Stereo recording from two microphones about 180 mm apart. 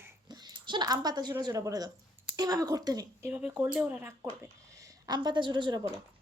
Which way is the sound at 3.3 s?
10° right (ahead or behind).